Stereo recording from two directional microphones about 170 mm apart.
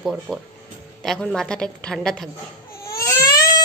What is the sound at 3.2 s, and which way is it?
Baby cry, 25° left (ahead or behind).